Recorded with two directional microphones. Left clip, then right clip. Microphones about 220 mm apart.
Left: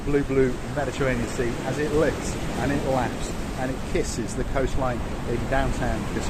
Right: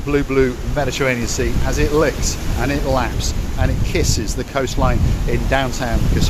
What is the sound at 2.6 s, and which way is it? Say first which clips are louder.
Speech: right 6 dB; 50° right (ahead or behind).